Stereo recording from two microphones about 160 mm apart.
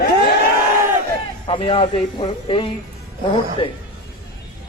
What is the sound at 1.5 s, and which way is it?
A man's voice, 35° left (ahead or behind).